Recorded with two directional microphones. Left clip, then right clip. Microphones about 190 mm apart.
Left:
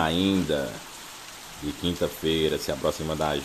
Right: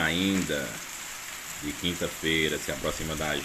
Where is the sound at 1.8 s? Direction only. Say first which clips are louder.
Left 3 dB; 20° left (ahead or behind).